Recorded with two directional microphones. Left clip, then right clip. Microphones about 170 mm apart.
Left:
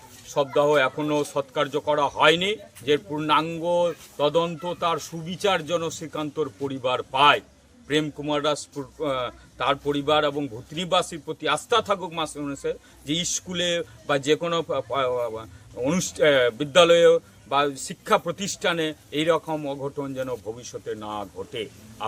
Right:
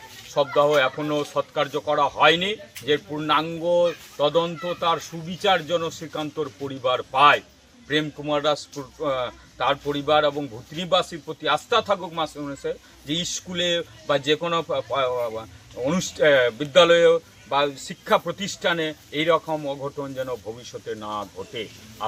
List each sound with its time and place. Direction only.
0.3 s a man's voice: 30° left (ahead or behind)